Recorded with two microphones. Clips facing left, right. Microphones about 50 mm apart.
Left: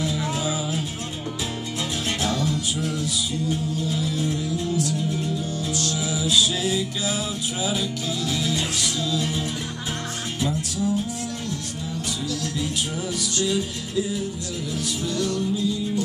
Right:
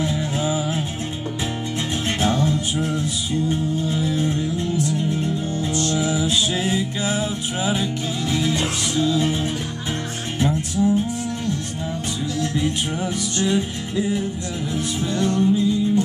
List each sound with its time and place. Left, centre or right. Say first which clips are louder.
0.0 s music: right 3 dB; right
2.1 s music: right 6 dB; right
12.4 s music: right 5 dB; right